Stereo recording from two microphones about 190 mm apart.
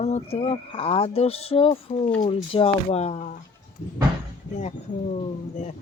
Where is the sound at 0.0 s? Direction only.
35° left (ahead or behind).